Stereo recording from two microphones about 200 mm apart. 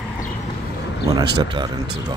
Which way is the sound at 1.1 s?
20° right (ahead or behind).